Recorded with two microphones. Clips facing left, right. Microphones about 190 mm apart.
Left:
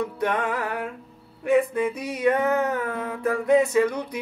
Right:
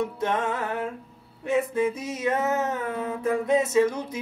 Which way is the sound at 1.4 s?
25° right (ahead or behind).